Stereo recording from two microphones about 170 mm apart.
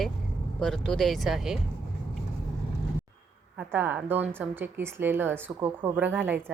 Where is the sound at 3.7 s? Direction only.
10° right (ahead or behind).